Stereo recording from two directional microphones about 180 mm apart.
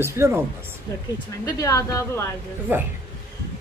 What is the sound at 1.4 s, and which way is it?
Speech, 20° left (ahead or behind).